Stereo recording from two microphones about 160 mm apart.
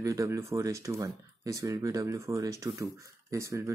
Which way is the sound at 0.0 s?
20° right (ahead or behind).